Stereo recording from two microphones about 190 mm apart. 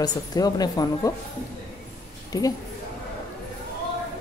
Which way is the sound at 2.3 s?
20° left (ahead or behind).